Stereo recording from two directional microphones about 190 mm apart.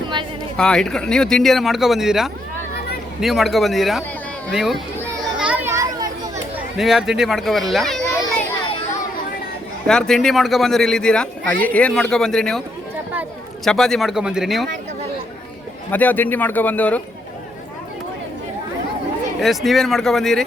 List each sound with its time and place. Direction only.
0.5 s a man's voice: 5° left (ahead or behind)
5.4 s children playing: 10° right (ahead or behind)
6.7 s a man's voice: centre (ahead or behind)
8.0 s children playing: 15° left (ahead or behind)
9.8 s a man's voice: 5° left (ahead or behind)
13.7 s a man's voice: centre (ahead or behind)
15.9 s speech: 10° left (ahead or behind)
19.4 s a man's voice: centre (ahead or behind)